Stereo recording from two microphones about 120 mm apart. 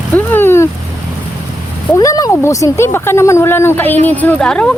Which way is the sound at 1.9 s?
30° left (ahead or behind).